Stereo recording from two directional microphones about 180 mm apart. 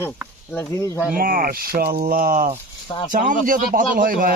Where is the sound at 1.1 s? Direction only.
50° right (ahead or behind).